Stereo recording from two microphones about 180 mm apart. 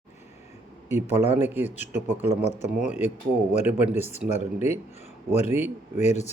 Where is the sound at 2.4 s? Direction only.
40° left (ahead or behind).